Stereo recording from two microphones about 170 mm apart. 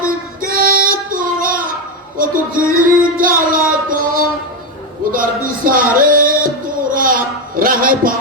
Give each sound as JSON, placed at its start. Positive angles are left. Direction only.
{"t": 0.5, "sound": "child singing", "side_deg": -60}
{"t": 2.1, "sound": "music", "side_deg": -55}
{"t": 6.9, "sound": "a sound", "side_deg": -55}